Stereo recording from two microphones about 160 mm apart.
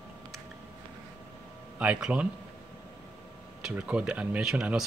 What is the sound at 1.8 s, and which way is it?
Speech, 5° right (ahead or behind).